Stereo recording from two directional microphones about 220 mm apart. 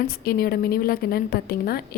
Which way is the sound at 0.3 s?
45° left (ahead or behind).